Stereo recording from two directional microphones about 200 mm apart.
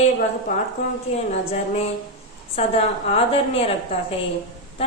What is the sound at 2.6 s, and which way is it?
A woman's voice, 30° left (ahead or behind).